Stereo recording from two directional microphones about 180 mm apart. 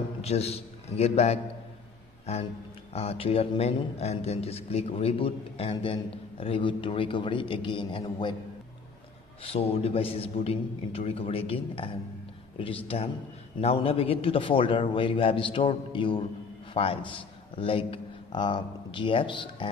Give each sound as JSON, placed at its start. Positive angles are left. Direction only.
{"t": 0.2, "sound": "a man's voice", "side_deg": 35}
{"t": 9.4, "sound": "a man's voice", "side_deg": 30}